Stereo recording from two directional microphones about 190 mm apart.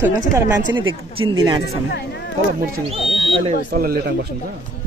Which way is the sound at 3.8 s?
50° right (ahead or behind).